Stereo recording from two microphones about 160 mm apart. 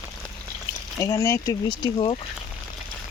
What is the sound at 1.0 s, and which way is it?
Speech, 20° left (ahead or behind).